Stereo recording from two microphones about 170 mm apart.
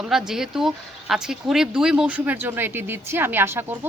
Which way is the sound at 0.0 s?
5° right (ahead or behind).